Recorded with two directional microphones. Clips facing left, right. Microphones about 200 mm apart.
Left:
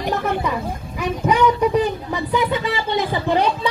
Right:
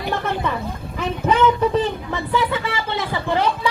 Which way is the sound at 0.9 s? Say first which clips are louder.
Even; 10° left (ahead or behind).